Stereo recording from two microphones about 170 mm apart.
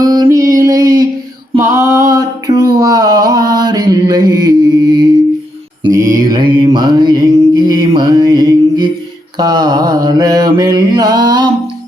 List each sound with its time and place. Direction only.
0.0 s music: 20° right (ahead or behind)
0.5 s a sound: 20° right (ahead or behind)
5.9 s mantra: 20° right (ahead or behind)